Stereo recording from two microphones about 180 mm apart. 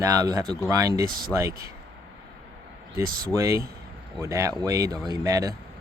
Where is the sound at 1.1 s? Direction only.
55° right (ahead or behind).